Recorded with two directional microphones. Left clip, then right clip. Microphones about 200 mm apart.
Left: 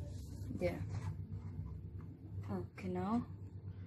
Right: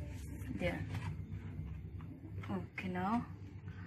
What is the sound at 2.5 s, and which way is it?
Speech, 20° left (ahead or behind).